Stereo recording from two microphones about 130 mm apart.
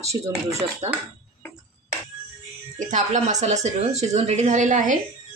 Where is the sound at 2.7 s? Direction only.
70° right (ahead or behind).